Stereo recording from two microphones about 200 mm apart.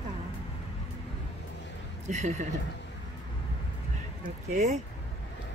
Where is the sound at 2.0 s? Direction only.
35° right (ahead or behind).